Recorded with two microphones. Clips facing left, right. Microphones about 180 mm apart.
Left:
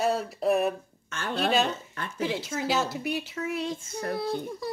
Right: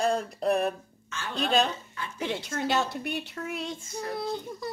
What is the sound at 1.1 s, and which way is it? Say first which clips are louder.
Speech: left 3 dB; 60° left (ahead or behind).